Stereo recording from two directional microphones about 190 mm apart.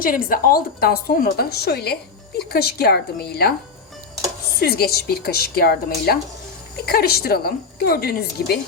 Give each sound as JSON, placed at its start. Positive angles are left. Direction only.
{"t": 0.0, "sound": "a woman's voice", "side_deg": 45}
{"t": 4.6, "sound": "a woman's voice", "side_deg": 55}